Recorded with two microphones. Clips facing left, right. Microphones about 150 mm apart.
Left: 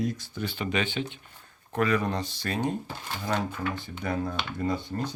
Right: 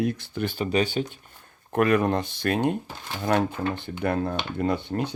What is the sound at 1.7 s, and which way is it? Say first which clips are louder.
Speech: right 5 dB; 55° right (ahead or behind).